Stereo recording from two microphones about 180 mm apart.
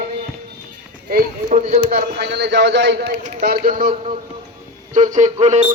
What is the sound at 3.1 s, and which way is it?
Speech, 45° right (ahead or behind).